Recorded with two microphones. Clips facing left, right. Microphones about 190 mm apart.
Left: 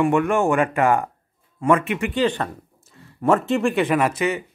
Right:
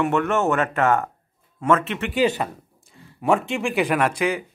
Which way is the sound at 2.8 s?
Centre (ahead or behind).